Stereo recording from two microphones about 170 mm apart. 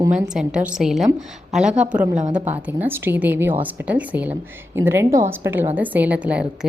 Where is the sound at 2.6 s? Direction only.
10° right (ahead or behind).